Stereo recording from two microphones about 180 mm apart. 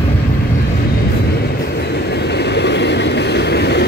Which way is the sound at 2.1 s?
70° left (ahead or behind).